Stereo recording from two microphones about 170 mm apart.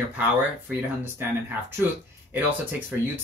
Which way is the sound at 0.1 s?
10° right (ahead or behind).